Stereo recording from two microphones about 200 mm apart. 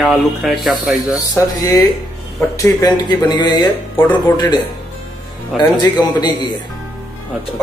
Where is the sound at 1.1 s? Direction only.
20° left (ahead or behind).